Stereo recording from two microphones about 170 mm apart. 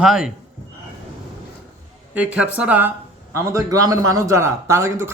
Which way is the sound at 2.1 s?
5° right (ahead or behind).